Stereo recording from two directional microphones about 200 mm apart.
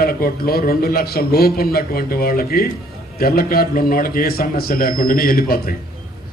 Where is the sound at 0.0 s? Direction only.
50° left (ahead or behind).